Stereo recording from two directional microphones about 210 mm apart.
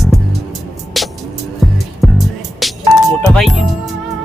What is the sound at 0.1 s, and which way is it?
Music, centre (ahead or behind).